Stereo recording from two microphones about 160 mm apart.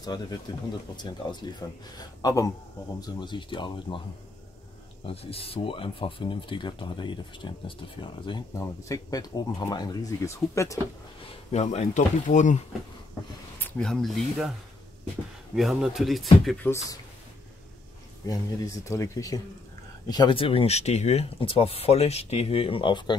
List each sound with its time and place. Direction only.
0.1 s speech: 25° left (ahead or behind)
5.0 s speech: 35° left (ahead or behind); by 10.8 s 20° left (ahead or behind)
11.5 s speech: 45° left (ahead or behind)
13.6 s speech: 5° left (ahead or behind)
15.5 s speech: 5° right (ahead or behind)
16.6 s speech: 20° left (ahead or behind)
18.2 s speech: 20° left (ahead or behind)